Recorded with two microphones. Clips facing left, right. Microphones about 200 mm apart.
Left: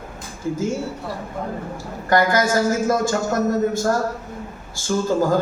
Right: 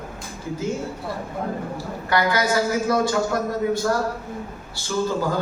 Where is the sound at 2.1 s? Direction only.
45° left (ahead or behind).